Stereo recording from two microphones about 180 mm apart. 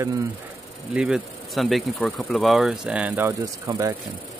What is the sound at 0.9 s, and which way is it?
Speech, 5° right (ahead or behind).